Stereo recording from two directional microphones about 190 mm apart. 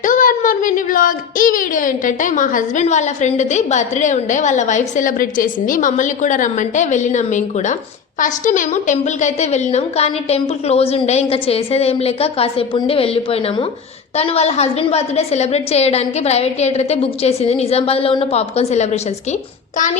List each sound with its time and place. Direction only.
0.0 s a woman's voice: 45° left (ahead or behind)